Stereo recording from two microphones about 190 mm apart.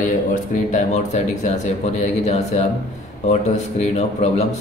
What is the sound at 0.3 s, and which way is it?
A man's voice, 40° left (ahead or behind).